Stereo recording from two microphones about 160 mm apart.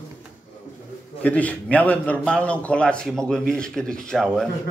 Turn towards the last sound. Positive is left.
turn(degrees=5)  # may be behind; listen again after turning